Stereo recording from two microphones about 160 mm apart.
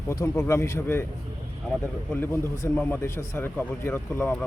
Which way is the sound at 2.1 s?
15° left (ahead or behind).